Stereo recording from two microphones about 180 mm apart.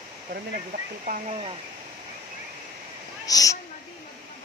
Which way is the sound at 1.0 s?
45° right (ahead or behind).